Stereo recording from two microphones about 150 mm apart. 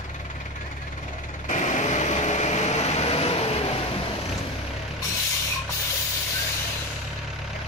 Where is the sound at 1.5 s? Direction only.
55° left (ahead or behind).